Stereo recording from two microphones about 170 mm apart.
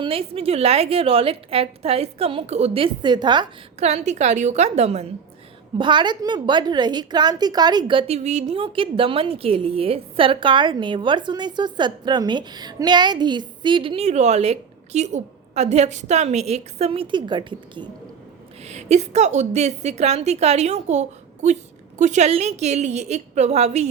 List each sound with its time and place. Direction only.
0.0 s a woman's voice: 35° right (ahead or behind)
3.8 s a woman's voice: 40° right (ahead or behind)
5.7 s a woman's voice: 30° right (ahead or behind)
18.6 s a woman's voice: 40° right (ahead or behind)